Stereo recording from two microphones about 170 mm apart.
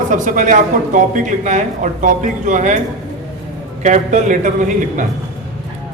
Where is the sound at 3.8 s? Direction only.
45° right (ahead or behind).